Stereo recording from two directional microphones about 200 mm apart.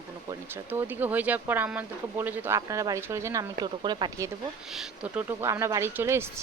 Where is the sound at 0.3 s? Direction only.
10° right (ahead or behind).